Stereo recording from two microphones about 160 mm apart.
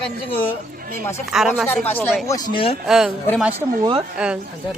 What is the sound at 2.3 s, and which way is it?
Speech, 30° left (ahead or behind).